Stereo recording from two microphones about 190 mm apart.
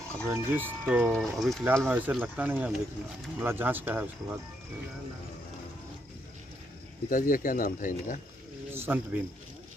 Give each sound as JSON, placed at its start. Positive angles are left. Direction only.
{"t": 0.3, "sound": "speech", "side_deg": -15}
{"t": 1.6, "sound": "speech", "side_deg": -10}
{"t": 7.1, "sound": "speech", "side_deg": 45}
{"t": 8.7, "sound": "speech", "side_deg": -10}